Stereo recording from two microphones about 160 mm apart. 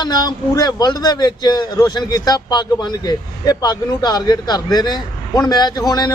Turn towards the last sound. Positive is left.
turn(degrees=25)  # may be behind; listen again after turning